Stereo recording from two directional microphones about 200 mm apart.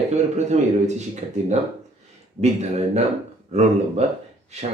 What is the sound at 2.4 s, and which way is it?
Speech, 35° right (ahead or behind).